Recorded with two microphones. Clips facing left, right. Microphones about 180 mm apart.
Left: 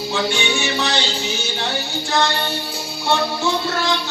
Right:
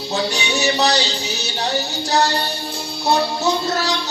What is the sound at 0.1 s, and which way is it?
Music, 40° right (ahead or behind).